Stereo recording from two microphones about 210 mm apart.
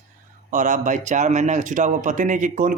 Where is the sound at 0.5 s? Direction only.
40° right (ahead or behind).